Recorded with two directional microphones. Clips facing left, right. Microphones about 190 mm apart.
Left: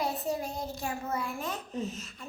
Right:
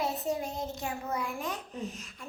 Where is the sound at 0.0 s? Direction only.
20° right (ahead or behind).